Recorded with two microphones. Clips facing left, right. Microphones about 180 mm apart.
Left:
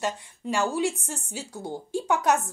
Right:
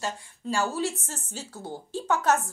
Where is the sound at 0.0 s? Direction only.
20° left (ahead or behind).